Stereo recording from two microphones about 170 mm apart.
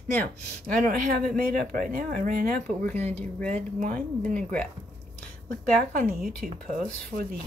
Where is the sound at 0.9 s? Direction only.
55° right (ahead or behind).